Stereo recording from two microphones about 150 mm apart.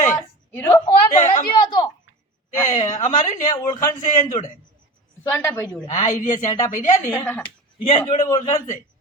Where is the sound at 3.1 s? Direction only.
25° left (ahead or behind).